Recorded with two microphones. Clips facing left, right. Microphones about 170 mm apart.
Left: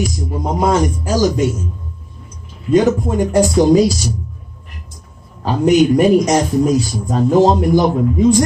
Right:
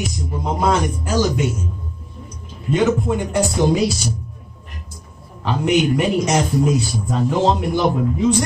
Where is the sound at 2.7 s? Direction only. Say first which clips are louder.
Left 4 dB; 40° left (ahead or behind).